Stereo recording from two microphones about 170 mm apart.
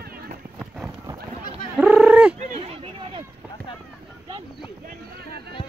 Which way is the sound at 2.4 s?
35° right (ahead or behind).